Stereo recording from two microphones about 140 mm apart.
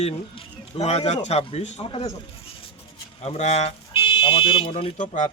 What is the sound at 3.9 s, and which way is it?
Speech, 40° left (ahead or behind).